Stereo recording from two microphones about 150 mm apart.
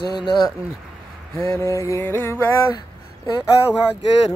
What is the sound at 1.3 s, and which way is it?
Speech, 15° left (ahead or behind).